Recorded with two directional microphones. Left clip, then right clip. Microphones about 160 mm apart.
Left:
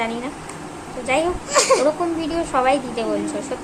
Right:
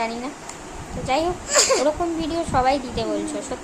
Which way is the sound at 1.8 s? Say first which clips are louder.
Left 2 dB; 10° right (ahead or behind).